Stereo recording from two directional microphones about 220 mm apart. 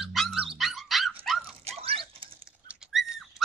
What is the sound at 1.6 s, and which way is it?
Dog, 25° right (ahead or behind).